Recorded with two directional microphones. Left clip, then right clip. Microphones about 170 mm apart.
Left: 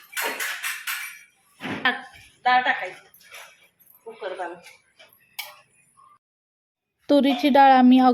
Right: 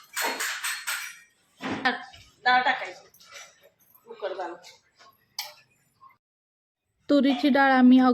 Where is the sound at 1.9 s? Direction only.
5° right (ahead or behind).